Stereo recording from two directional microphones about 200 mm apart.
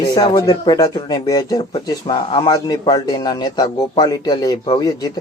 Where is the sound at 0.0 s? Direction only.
20° left (ahead or behind).